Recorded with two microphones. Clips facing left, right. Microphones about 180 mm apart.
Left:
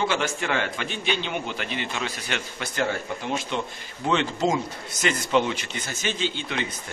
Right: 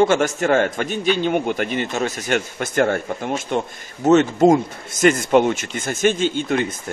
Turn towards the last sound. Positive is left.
turn(degrees=-45)  # may be behind; listen again after turning